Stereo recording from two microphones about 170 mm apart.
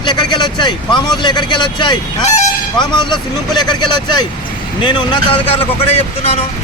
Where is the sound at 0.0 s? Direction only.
25° left (ahead or behind).